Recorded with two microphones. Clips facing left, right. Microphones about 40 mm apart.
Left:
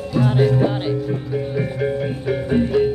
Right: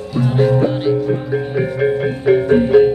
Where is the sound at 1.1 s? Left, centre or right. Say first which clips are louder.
Right 5 dB; right.